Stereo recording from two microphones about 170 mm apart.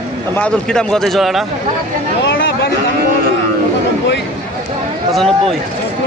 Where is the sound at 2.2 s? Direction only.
70° left (ahead or behind).